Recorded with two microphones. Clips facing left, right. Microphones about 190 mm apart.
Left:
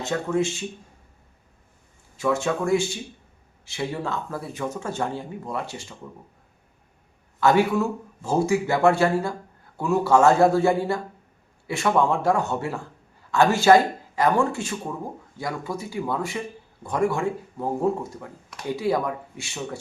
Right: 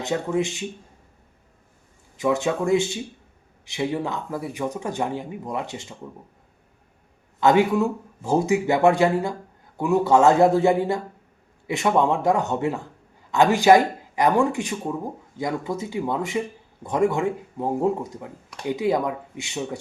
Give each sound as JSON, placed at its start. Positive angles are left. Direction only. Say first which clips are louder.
{"t": 0.0, "sound": "speech", "louder": "even", "side_deg": -20}
{"t": 2.1, "sound": "speech", "louder": "right 1 dB", "side_deg": -20}
{"t": 7.3, "sound": "speech", "louder": "right 2 dB", "side_deg": -20}